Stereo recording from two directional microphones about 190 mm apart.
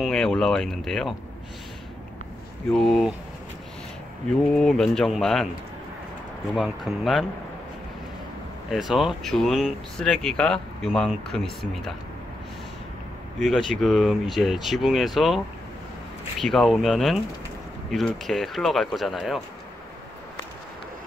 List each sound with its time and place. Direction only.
0.0 s speech: 5° left (ahead or behind)
2.7 s speech: centre (ahead or behind)
4.6 s speech: 5° left (ahead or behind)
6.5 s speech: centre (ahead or behind)
8.6 s speech: centre (ahead or behind)
13.4 s speech: centre (ahead or behind)